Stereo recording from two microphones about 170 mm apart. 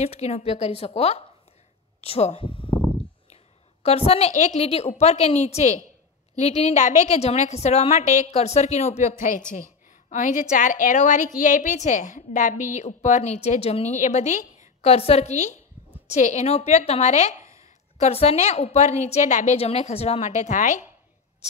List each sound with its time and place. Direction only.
0.0 s a woman's voice: 40° left (ahead or behind)
3.8 s a woman's voice: 35° left (ahead or behind)